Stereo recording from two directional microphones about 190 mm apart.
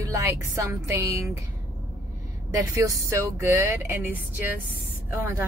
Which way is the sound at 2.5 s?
15° right (ahead or behind).